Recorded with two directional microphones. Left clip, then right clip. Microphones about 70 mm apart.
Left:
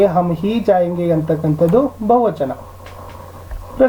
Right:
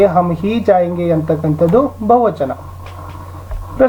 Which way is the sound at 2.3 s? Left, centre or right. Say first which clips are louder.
Right 2 dB; centre.